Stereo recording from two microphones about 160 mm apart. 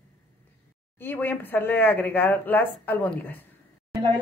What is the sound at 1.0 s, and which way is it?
Speech, 10° left (ahead or behind).